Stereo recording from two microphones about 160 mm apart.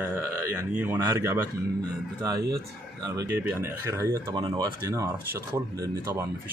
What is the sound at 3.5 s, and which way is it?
Speech, 15° right (ahead or behind).